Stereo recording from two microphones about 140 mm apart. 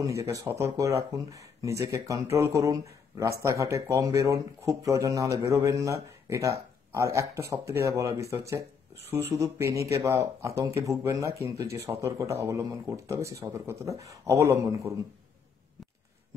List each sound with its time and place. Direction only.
0.0 s speech: 20° right (ahead or behind)